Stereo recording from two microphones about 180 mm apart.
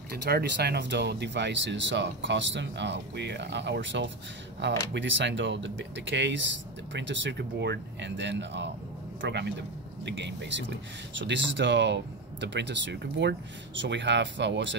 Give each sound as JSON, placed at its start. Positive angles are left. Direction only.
{"t": 0.1, "sound": "speech", "side_deg": -60}